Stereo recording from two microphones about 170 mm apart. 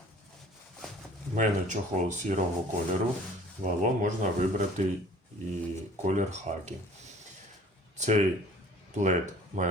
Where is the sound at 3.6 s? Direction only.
50° right (ahead or behind).